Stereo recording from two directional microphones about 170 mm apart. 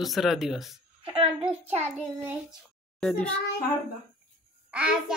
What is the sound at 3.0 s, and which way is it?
Speech, 5° left (ahead or behind).